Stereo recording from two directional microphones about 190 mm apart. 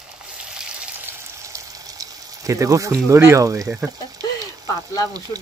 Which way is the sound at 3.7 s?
15° right (ahead or behind).